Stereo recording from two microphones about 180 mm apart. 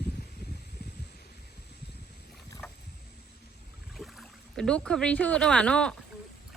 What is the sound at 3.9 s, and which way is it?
Speech, centre (ahead or behind).